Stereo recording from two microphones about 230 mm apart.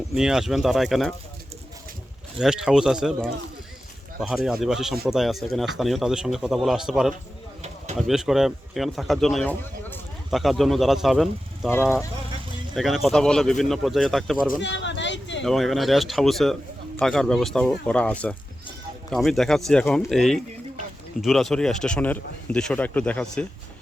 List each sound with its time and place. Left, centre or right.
0.1 s a man's voice: centre
2.4 s a man's voice: centre
12.7 s a man's voice: centre
14.6 s a sound: left
15.4 s a man's voice: centre